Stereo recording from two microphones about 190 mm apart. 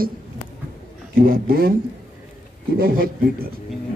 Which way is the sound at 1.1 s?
50° right (ahead or behind).